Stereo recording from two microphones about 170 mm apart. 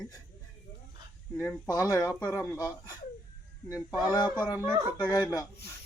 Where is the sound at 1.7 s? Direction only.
20° left (ahead or behind).